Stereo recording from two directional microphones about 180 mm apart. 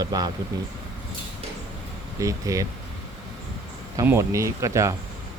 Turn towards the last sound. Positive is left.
turn(degrees=-15)  # may be behind; listen again after turning